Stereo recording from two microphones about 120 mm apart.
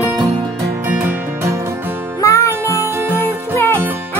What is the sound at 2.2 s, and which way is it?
Music, 25° left (ahead or behind).